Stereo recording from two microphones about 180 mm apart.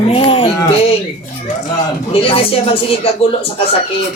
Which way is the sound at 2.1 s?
30° left (ahead or behind).